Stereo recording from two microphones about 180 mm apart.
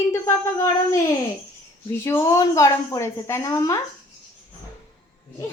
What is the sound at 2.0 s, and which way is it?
Speech, 15° left (ahead or behind).